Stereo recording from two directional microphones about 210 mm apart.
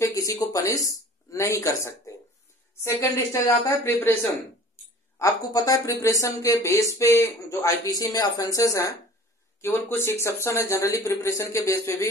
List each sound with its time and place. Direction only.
0.0 s speech: 15° left (ahead or behind)